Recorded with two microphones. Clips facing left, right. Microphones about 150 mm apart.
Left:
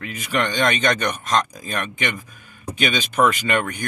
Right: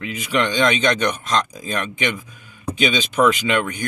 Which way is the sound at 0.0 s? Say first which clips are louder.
Right 2 dB; 50° left (ahead or behind).